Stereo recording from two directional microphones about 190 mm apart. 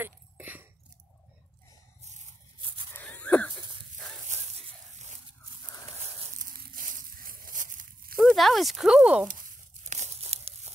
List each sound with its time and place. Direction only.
0.0 s a sound: 10° right (ahead or behind)
2.9 s wheeze: 10° left (ahead or behind)
4.3 s tearing: 35° right (ahead or behind)
6.2 s a sound: 40° right (ahead or behind)
8.2 s speech: centre (ahead or behind)
9.3 s crumpling: 45° right (ahead or behind)